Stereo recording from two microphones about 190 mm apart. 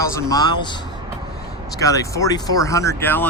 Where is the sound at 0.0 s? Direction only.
15° left (ahead or behind).